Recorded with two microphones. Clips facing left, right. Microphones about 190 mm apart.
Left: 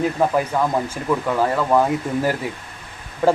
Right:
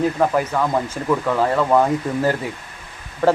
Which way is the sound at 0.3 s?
10° left (ahead or behind).